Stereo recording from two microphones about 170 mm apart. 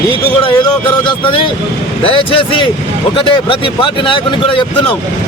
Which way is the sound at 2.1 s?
30° left (ahead or behind).